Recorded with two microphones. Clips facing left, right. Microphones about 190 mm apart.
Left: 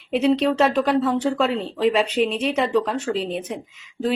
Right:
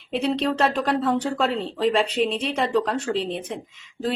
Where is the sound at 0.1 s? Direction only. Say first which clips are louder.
Left 5 dB; centre (ahead or behind).